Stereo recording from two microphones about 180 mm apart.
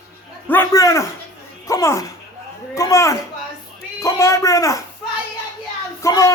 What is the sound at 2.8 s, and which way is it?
Speech, 15° left (ahead or behind).